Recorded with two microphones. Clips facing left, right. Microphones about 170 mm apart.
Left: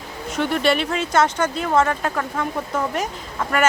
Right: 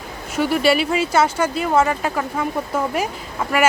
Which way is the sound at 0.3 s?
5° right (ahead or behind).